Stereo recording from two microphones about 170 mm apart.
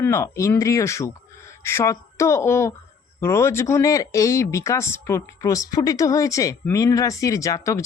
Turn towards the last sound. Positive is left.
turn(degrees=20)  # may be behind; listen again after turning